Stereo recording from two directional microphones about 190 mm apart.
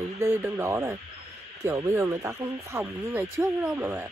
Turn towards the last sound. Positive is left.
turn(degrees=-10)  # may be behind; listen again after turning